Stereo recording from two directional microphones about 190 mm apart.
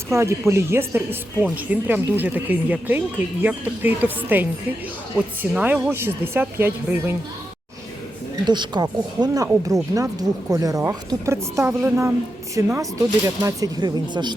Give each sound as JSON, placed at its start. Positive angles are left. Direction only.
{"t": 0.1, "sound": "speech", "side_deg": -15}
{"t": 8.4, "sound": "speech", "side_deg": -25}